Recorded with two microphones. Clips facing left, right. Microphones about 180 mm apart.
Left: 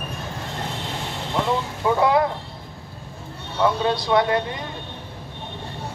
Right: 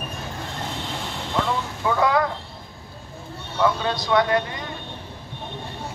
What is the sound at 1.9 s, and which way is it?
Speech, 25° left (ahead or behind).